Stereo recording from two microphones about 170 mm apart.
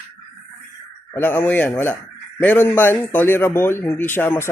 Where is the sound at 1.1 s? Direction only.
15° left (ahead or behind).